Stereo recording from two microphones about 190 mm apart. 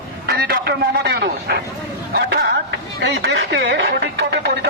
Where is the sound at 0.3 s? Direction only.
55° right (ahead or behind).